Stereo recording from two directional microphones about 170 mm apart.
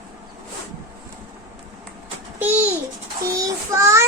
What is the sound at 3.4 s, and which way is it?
Child singing, 15° right (ahead or behind).